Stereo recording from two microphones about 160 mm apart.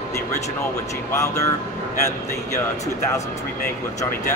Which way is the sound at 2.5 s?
20° left (ahead or behind).